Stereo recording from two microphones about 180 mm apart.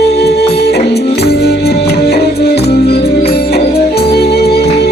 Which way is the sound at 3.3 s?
60° left (ahead or behind).